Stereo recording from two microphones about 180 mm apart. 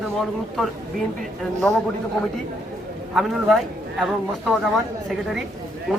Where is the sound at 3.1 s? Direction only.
Centre (ahead or behind).